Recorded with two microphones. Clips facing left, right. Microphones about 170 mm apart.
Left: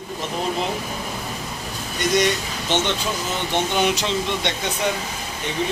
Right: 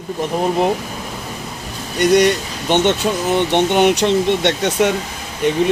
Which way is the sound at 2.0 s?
65° right (ahead or behind).